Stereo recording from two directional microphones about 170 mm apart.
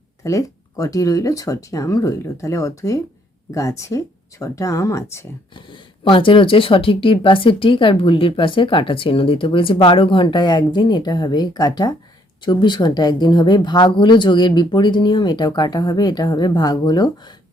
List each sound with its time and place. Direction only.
0.2 s speech: 20° left (ahead or behind)
5.5 s speech: 30° left (ahead or behind)